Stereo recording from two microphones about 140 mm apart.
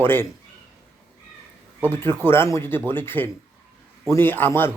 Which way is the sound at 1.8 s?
15° left (ahead or behind).